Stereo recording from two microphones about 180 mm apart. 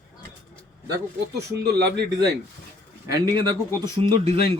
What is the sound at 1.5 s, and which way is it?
Speech, 65° right (ahead or behind).